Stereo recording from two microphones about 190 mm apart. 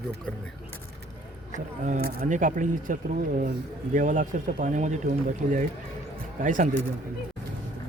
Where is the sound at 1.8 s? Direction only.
45° right (ahead or behind).